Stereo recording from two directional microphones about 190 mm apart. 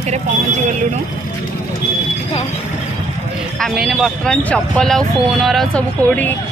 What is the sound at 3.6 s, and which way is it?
Speech, centre (ahead or behind).